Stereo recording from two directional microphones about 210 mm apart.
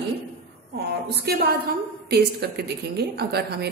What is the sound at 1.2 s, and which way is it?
A woman's voice, 50° right (ahead or behind).